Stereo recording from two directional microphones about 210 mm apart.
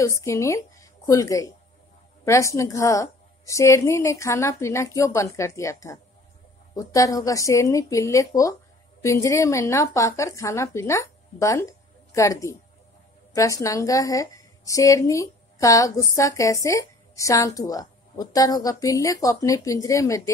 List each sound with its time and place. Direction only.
0.0 s a woman's voice: 15° left (ahead or behind)